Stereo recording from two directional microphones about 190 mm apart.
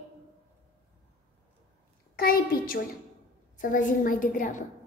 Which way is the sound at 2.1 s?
50° left (ahead or behind).